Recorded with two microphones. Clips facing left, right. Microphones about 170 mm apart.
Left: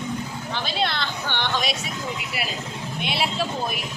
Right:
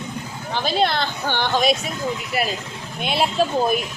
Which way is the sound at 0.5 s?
45° right (ahead or behind).